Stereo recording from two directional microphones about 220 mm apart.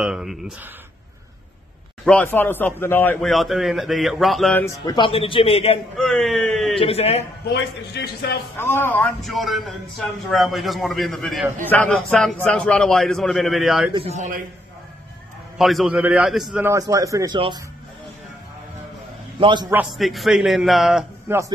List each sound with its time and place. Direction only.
0.0 s a man's voice: centre (ahead or behind)
2.0 s a man's voice: 10° left (ahead or behind); by 5.8 s 25° left (ahead or behind)
5.9 s a man's voice: centre (ahead or behind)
6.8 s a man's voice: 25° left (ahead or behind)
7.5 s a man's voice: 50° left (ahead or behind)
8.5 s a man's voice: 10° left (ahead or behind)
14.1 s a man's voice: 35° right (ahead or behind)
15.5 s a man's voice: centre (ahead or behind); by 17.6 s 20° right (ahead or behind)
19.4 s a man's voice: 20° right (ahead or behind)
19.7 s a man's voice: 5° right (ahead or behind)